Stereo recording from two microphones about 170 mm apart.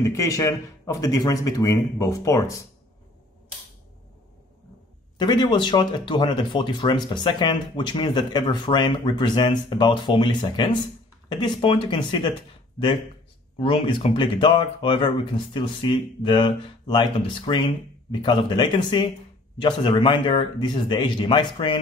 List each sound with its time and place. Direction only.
0.0 s speech: 15° left (ahead or behind)
5.1 s speech: 25° left (ahead or behind)